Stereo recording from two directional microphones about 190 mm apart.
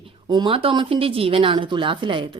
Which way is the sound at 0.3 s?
25° right (ahead or behind).